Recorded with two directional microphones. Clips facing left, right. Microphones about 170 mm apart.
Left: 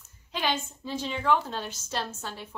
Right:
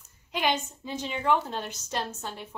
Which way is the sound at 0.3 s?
15° right (ahead or behind).